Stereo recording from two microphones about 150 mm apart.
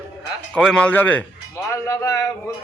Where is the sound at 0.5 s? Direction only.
5° left (ahead or behind).